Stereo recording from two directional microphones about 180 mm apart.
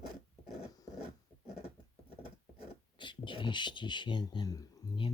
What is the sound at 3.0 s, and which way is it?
Speech, 25° left (ahead or behind).